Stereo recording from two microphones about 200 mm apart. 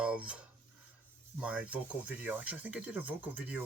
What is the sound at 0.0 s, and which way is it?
Filing, 5° right (ahead or behind).